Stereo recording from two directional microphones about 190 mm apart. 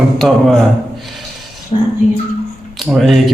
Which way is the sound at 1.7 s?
30° left (ahead or behind).